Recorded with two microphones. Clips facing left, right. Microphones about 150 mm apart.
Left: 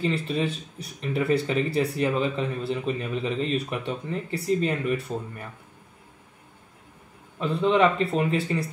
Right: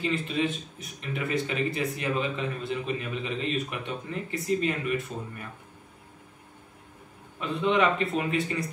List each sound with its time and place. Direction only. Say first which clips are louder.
0.0 s speech: left 2 dB; 30° left (ahead or behind)
7.3 s speech: left 3 dB; 35° left (ahead or behind)